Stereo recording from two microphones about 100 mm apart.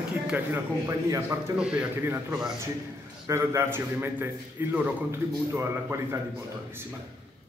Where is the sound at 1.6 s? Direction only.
10° right (ahead or behind).